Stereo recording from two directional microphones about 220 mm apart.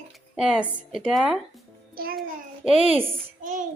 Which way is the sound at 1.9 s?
40° right (ahead or behind).